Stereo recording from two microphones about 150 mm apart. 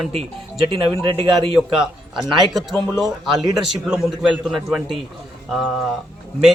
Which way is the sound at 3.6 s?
5° right (ahead or behind).